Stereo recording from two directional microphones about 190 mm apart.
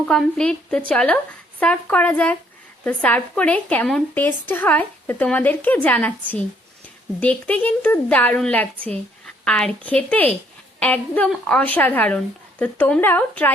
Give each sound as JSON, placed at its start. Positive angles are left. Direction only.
{"t": 0.0, "sound": "a woman's voice", "side_deg": 5}